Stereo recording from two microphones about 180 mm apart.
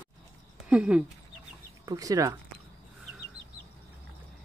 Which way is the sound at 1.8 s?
20° right (ahead or behind).